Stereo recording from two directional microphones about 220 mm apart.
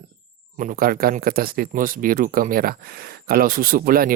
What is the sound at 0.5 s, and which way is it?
Speech, 35° right (ahead or behind).